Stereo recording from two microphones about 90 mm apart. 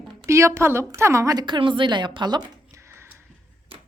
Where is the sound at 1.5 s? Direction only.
65° right (ahead or behind).